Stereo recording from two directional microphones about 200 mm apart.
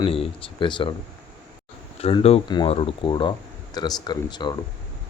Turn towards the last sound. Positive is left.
turn(degrees=20)  # may be behind; listen again after turning